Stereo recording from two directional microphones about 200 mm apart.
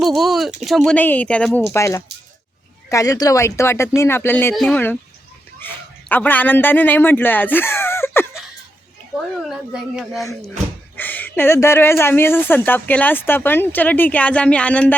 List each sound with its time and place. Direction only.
0.0 s speech: centre (ahead or behind)
1.7 s a man's voice: 15° left (ahead or behind)
9.4 s speech: centre (ahead or behind)